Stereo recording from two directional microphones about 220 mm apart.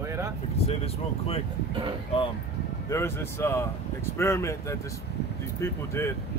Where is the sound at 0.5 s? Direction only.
25° left (ahead or behind).